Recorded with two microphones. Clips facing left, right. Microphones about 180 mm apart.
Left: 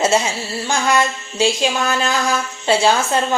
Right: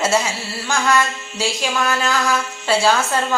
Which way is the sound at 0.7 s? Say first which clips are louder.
Left 1 dB; 20° left (ahead or behind).